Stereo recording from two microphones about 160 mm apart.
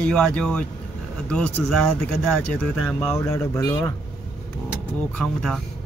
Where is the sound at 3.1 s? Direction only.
15° left (ahead or behind).